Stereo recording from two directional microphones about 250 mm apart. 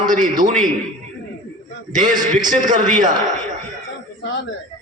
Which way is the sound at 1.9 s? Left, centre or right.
Right.